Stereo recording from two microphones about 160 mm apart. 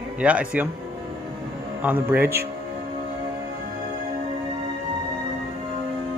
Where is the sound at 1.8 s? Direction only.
10° right (ahead or behind).